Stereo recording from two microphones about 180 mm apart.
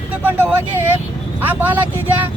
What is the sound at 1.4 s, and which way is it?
Speech, 10° right (ahead or behind).